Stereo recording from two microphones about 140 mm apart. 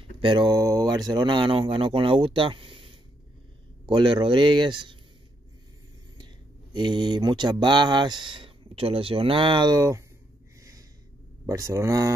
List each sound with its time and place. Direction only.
0.2 s speech: 35° right (ahead or behind)
6.1 s mantra: 30° right (ahead or behind)
11.4 s speech: 25° right (ahead or behind)